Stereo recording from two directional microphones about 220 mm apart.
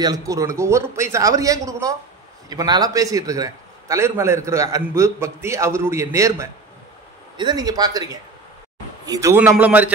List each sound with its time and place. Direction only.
0.0 s a man's voice: 15° right (ahead or behind)